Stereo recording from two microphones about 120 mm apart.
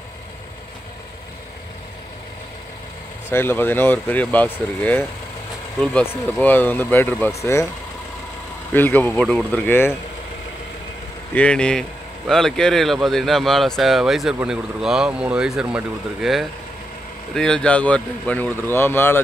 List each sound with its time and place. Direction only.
3.3 s speech: 20° left (ahead or behind)
8.7 s speech: 15° left (ahead or behind)
11.3 s speech: 10° left (ahead or behind)